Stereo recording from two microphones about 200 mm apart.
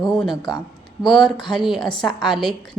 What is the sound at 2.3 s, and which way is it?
Speech, centre (ahead or behind).